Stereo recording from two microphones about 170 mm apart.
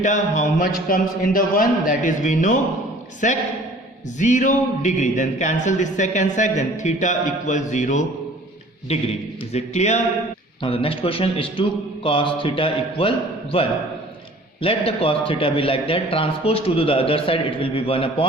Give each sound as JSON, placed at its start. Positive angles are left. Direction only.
{"t": 0.0, "sound": "a man's voice", "side_deg": 45}